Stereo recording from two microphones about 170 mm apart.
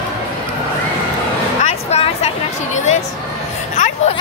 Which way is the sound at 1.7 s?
40° left (ahead or behind).